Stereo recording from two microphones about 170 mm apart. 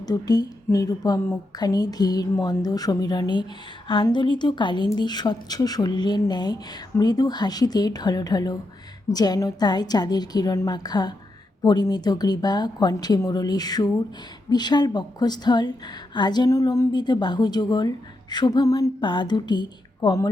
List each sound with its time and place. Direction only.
0.0 s a woman's voice: 20° left (ahead or behind)